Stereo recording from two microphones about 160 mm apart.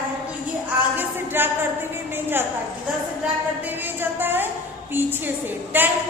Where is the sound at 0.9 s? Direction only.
15° right (ahead or behind).